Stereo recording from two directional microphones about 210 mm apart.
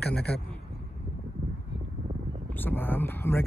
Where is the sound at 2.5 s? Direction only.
10° left (ahead or behind).